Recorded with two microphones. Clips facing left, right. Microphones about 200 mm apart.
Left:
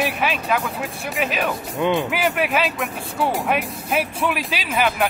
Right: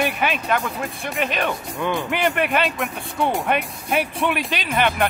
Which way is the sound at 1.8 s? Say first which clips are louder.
Left 5 dB; 20° left (ahead or behind).